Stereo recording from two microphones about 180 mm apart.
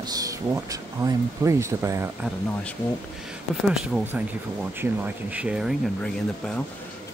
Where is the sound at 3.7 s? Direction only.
5° right (ahead or behind).